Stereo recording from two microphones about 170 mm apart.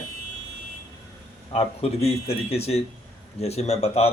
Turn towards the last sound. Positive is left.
turn(degrees=40)  # may be behind; listen again after turning